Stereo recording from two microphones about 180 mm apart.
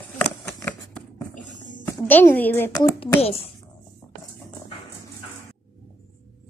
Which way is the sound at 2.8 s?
30° left (ahead or behind).